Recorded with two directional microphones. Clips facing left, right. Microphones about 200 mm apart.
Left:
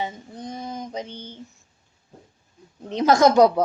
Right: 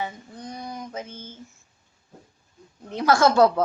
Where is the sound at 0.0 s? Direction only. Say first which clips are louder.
Left 2 dB; 20° left (ahead or behind).